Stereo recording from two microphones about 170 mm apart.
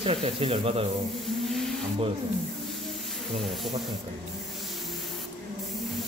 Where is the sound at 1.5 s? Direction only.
Centre (ahead or behind).